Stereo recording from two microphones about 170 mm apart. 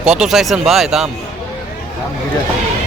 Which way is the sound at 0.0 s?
5° right (ahead or behind).